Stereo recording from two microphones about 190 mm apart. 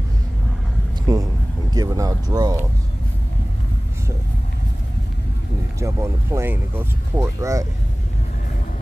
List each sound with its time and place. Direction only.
1.1 s speech: 20° right (ahead or behind)
5.8 s speech: 15° right (ahead or behind)